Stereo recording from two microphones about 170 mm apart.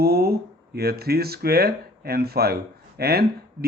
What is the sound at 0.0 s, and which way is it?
Speech, 65° right (ahead or behind).